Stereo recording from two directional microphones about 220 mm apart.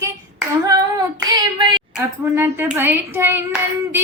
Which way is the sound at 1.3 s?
20° right (ahead or behind).